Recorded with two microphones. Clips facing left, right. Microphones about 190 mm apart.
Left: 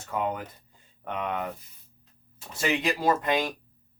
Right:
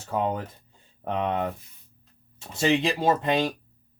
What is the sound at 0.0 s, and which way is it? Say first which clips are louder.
Speech: right 3 dB; 30° right (ahead or behind).